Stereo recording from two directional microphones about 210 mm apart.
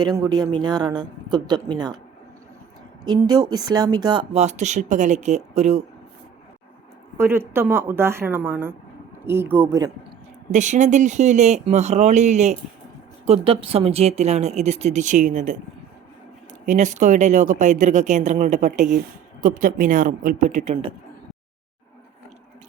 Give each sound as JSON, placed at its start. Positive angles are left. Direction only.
{"t": 0.2, "sound": "speech", "side_deg": -15}
{"t": 3.0, "sound": "speech", "side_deg": -20}
{"t": 7.2, "sound": "a woman's voice", "side_deg": -10}
{"t": 10.5, "sound": "speech", "side_deg": -35}
{"t": 16.6, "sound": "speech", "side_deg": -35}